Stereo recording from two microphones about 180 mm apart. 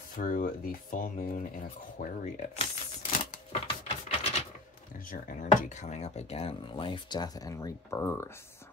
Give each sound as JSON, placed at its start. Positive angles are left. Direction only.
{"t": 0.2, "sound": "speech", "side_deg": 50}
{"t": 2.0, "sound": "a sound", "side_deg": 45}
{"t": 5.1, "sound": "speech", "side_deg": 45}